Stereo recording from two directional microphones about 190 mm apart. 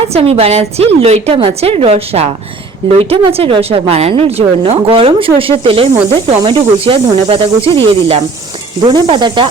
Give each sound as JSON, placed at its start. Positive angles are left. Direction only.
{"t": 0.1, "sound": "speech", "side_deg": -30}